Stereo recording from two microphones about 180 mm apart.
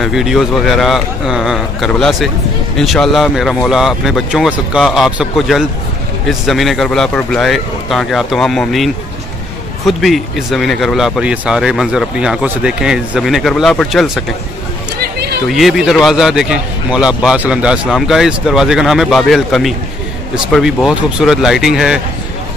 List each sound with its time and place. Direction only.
0.0 s speech: centre (ahead or behind)
15.0 s a sound: 60° right (ahead or behind)
15.4 s speech: centre (ahead or behind)